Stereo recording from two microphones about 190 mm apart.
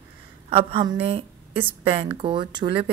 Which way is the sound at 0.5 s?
30° right (ahead or behind).